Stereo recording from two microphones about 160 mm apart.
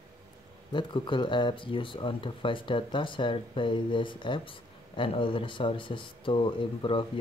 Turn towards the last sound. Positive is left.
turn(degrees=30)  # may be behind; listen again after turning